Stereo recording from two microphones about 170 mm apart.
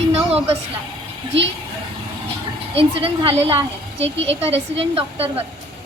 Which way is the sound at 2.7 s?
35° right (ahead or behind).